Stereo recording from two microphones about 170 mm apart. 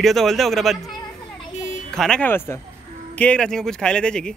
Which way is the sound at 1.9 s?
5° left (ahead or behind).